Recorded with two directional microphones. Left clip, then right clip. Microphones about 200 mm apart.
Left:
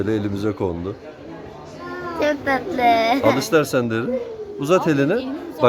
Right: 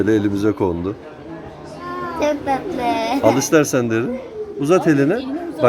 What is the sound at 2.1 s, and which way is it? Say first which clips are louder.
Speech: even; 20° left (ahead or behind).